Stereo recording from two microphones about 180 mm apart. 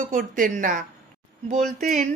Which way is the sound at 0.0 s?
45° right (ahead or behind).